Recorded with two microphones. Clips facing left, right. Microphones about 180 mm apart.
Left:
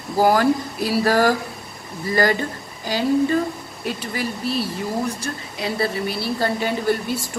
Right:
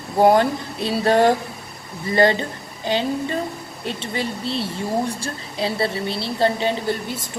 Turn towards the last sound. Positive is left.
turn(degrees=-20)  # may be behind; listen again after turning